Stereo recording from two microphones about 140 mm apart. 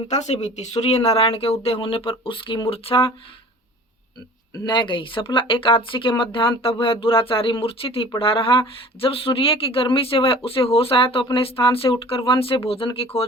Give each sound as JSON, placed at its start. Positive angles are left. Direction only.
{"t": 0.1, "sound": "speech", "side_deg": 55}
{"t": 4.6, "sound": "speech", "side_deg": 35}